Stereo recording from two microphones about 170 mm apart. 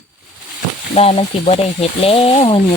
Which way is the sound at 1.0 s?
35° left (ahead or behind).